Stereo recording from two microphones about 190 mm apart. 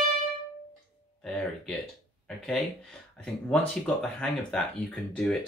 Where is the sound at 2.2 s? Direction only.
Centre (ahead or behind).